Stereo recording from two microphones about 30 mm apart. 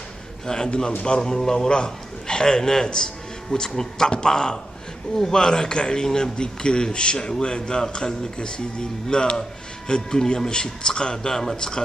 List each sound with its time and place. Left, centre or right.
0.5 s a man's voice: left
6.0 s speech: centre
6.3 s a man's voice: left